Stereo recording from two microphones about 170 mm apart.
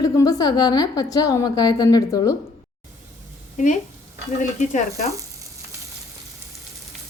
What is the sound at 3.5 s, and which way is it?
Speech, 45° left (ahead or behind).